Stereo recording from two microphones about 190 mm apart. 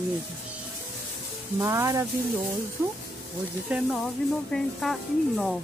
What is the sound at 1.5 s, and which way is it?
Speech, 15° right (ahead or behind).